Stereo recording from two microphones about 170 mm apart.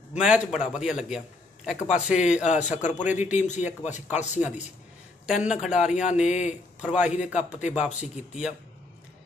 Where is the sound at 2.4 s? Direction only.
45° left (ahead or behind).